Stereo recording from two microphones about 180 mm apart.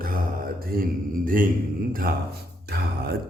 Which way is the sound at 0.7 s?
50° right (ahead or behind).